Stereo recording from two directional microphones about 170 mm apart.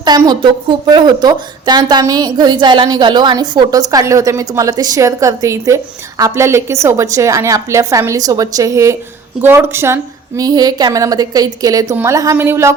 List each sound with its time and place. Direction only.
0.0 s a woman's voice: 25° right (ahead or behind)